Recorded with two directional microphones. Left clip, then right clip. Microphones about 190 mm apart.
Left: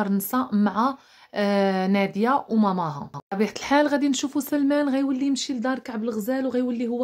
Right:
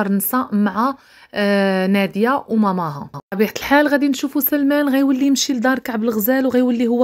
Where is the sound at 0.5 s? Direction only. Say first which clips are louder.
Right 4 dB; 10° right (ahead or behind).